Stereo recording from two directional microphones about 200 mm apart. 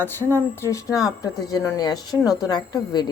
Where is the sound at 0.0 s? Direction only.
10° left (ahead or behind).